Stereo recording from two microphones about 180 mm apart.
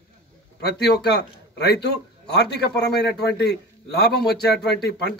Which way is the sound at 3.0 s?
65° left (ahead or behind).